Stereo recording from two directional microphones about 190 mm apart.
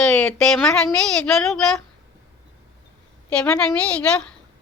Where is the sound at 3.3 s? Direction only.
5° left (ahead or behind).